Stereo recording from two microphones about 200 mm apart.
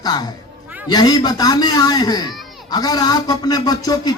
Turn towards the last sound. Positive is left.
turn(degrees=20)  # may be behind; listen again after turning